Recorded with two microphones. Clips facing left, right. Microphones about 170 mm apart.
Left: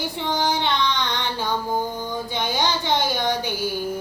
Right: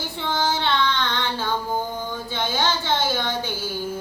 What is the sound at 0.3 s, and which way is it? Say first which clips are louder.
Child singing: even; 15° left (ahead or behind).